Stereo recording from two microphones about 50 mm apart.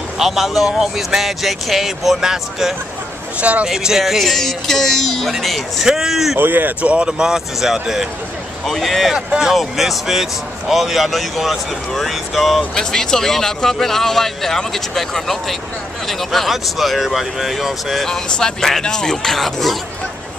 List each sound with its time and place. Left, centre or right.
0.2 s speech: centre
3.3 s speech: right
3.6 s speech: centre
6.4 s speech: right
6.8 s speech: right
8.6 s speech: centre
9.1 s speech: centre
12.7 s speech: centre
18.0 s speech: centre